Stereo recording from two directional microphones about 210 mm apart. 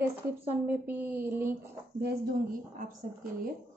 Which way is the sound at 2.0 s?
40° right (ahead or behind).